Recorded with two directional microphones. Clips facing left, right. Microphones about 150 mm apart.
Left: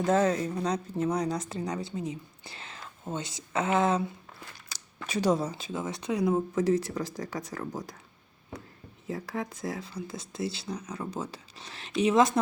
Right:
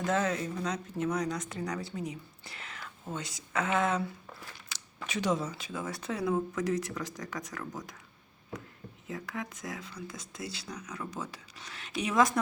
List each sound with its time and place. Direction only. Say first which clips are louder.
0.0 s a woman's voice: left 5 dB; 35° left (ahead or behind)
4.7 s a sound: even; 40° left (ahead or behind)
5.0 s speech: left 4 dB; 35° left (ahead or behind)
9.0 s a woman's voice: left 5 dB; 35° left (ahead or behind)